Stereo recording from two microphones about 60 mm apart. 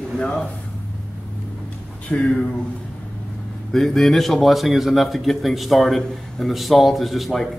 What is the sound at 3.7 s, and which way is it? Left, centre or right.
Speech, centre.